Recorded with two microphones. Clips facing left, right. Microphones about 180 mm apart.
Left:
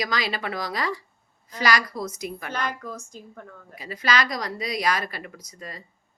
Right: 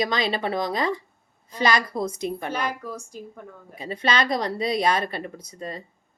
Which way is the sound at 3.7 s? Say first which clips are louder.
Right 1 dB; 30° right (ahead or behind).